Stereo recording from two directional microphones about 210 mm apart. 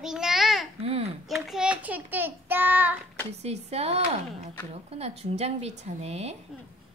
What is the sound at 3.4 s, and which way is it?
Speech, 30° right (ahead or behind).